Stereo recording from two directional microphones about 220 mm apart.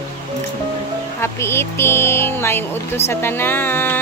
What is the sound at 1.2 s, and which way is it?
Speech, 10° left (ahead or behind).